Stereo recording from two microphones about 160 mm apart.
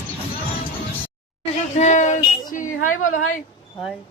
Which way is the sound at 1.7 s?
50° left (ahead or behind).